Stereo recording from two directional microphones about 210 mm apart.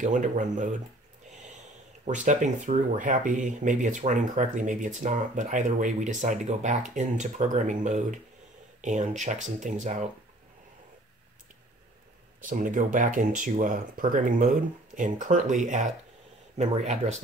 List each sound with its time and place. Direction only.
0.0 s speech: 40° right (ahead or behind)
2.0 s speech: 35° right (ahead or behind)
12.4 s speech: 40° right (ahead or behind)